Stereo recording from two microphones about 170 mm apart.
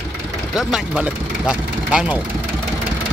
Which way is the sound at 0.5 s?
5° right (ahead or behind).